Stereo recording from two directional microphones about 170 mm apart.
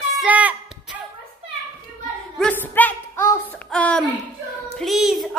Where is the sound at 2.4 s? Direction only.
10° left (ahead or behind).